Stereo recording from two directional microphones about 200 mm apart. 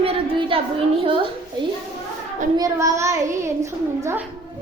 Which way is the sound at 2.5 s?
15° right (ahead or behind).